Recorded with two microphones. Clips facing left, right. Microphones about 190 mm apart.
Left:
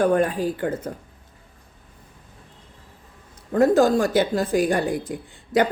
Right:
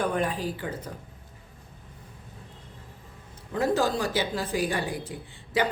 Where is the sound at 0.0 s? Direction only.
50° left (ahead or behind).